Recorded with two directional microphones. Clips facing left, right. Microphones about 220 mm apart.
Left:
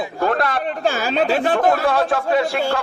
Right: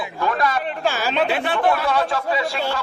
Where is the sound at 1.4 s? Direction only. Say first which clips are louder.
Left 3 dB; 45° left (ahead or behind).